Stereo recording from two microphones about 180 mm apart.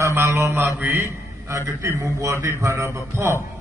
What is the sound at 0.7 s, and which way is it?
A man's voice, 10° right (ahead or behind).